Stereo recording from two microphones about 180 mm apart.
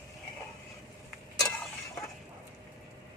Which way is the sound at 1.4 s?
5° left (ahead or behind).